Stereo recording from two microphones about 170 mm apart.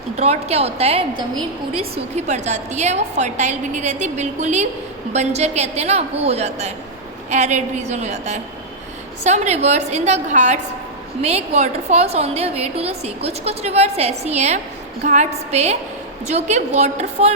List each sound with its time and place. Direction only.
0.2 s a woman's voice: 40° right (ahead or behind)